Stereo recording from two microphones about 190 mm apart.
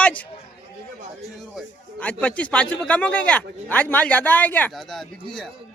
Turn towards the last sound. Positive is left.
turn(degrees=0)  # may be behind; listen again after turning